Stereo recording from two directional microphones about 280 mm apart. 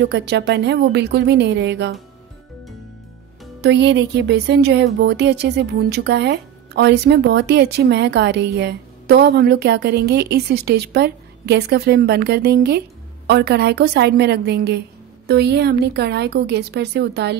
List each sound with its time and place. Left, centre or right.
0.0 s a woman's voice: right
3.6 s a woman's voice: right